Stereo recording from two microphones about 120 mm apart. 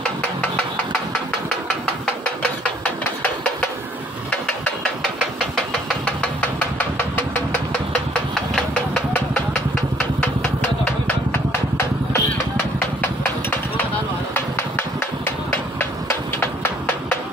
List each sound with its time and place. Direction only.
2.4 s hammer: 10° left (ahead or behind)
5.9 s a sound: 10° left (ahead or behind)
7.0 s music: 15° left (ahead or behind)
8.4 s engine: centre (ahead or behind)
12.1 s engine: 15° left (ahead or behind)
14.3 s a sound: 20° left (ahead or behind)